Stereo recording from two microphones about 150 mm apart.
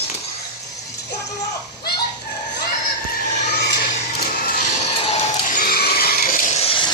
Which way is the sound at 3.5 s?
90° left.